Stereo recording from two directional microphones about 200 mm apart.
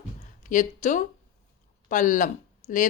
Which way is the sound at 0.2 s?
40° left (ahead or behind).